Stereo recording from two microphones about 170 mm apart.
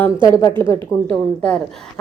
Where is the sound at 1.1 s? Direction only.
5° left (ahead or behind).